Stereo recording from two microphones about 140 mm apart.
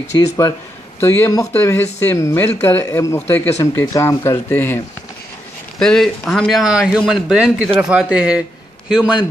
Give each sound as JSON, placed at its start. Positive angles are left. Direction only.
{"t": 1.0, "sound": "speech", "side_deg": 15}
{"t": 5.8, "sound": "a man's voice", "side_deg": 5}